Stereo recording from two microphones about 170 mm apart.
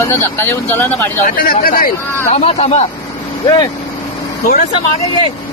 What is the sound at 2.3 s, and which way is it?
Speech, 40° left (ahead or behind).